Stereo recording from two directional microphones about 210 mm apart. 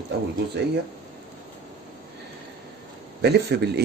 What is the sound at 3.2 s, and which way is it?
Speech, 50° right (ahead or behind).